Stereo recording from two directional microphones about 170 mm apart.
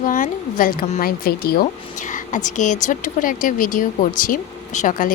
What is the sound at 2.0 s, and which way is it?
A woman's voice, 50° left (ahead or behind).